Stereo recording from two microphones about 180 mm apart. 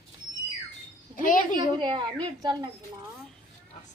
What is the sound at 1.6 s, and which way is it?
A woman's voice, 25° right (ahead or behind).